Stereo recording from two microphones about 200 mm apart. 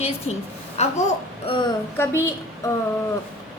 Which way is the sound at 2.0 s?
10° left (ahead or behind).